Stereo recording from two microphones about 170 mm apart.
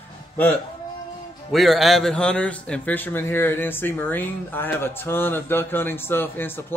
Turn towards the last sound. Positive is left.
turn(degrees=15)  # may be behind; listen again after turning